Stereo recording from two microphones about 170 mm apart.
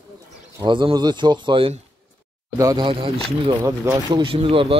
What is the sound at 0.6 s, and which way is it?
Speech, 30° right (ahead or behind).